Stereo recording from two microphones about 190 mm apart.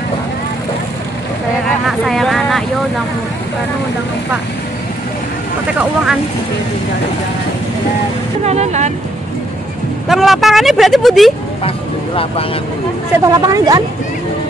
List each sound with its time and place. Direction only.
1.9 s speech: centre (ahead or behind)
8.5 s speech: 35° right (ahead or behind)
10.0 s speech: centre (ahead or behind)
13.2 s speech: 20° right (ahead or behind)